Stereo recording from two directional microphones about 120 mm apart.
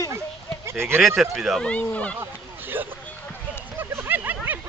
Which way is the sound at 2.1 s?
15° right (ahead or behind).